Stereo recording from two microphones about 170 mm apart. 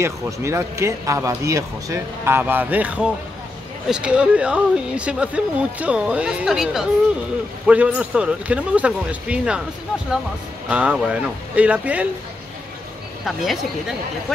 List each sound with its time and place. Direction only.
0.0 s speech: 15° right (ahead or behind)
10.7 s speech: 5° right (ahead or behind)
13.2 s speech: centre (ahead or behind)